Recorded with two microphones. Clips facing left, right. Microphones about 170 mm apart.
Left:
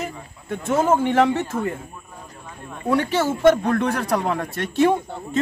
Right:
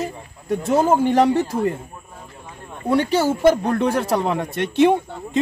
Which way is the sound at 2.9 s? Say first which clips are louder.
Right 2 dB; 30° right (ahead or behind).